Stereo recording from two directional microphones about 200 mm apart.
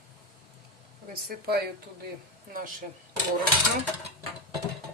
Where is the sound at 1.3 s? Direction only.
50° right (ahead or behind).